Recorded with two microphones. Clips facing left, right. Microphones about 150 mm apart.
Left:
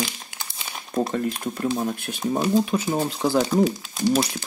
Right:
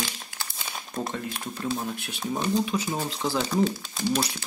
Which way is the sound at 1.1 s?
45° left (ahead or behind).